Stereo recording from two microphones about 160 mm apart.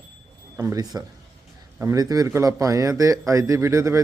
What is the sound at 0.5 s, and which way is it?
Speech, 20° right (ahead or behind).